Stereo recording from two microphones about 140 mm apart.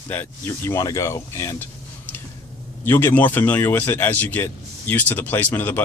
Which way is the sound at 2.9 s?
15° left (ahead or behind).